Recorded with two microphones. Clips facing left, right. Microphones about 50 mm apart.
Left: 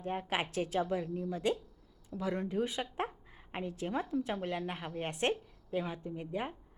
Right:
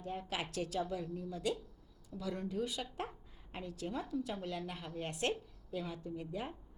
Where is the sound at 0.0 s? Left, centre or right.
Left.